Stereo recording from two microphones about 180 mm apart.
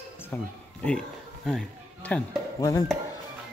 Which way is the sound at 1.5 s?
5° left (ahead or behind).